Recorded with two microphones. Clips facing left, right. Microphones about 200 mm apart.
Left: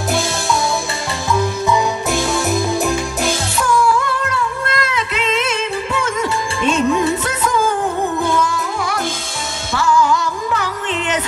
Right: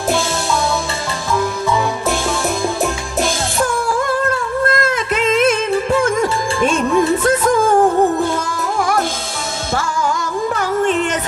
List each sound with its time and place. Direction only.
3.5 s music: 50° right (ahead or behind)
8.4 s music: 45° right (ahead or behind)